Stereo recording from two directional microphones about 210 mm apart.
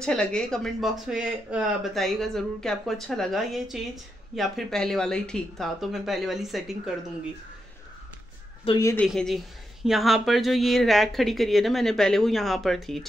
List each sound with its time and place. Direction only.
0.0 s speech: 5° left (ahead or behind)
8.6 s a woman's voice: 15° left (ahead or behind)
9.0 s speech: centre (ahead or behind)